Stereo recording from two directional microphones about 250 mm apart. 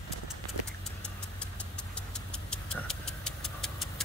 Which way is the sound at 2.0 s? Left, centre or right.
Centre.